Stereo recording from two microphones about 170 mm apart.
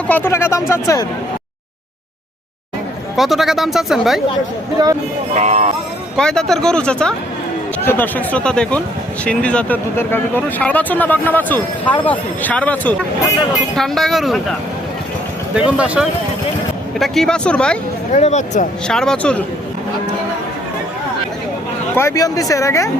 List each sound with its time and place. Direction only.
0.1 s speech: 15° left (ahead or behind)
3.2 s speech: centre (ahead or behind)
4.8 s a man's voice: 25° right (ahead or behind)
5.3 s speech: 45° right (ahead or behind)
6.1 s speech: 5° left (ahead or behind)
15.5 s speech: 5° right (ahead or behind)
18.1 s speech: 40° left (ahead or behind)
18.9 s speech: 5° left (ahead or behind)
21.9 s speech: 20° left (ahead or behind)